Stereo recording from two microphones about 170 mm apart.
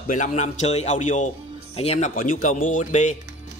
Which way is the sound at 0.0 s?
50° left (ahead or behind).